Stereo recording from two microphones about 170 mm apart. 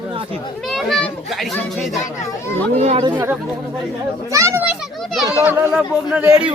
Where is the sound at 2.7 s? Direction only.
40° right (ahead or behind).